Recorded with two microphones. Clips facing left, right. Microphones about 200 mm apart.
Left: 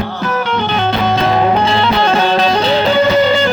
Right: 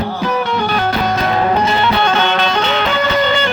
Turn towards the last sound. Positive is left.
turn(degrees=30)  # may be behind; listen again after turning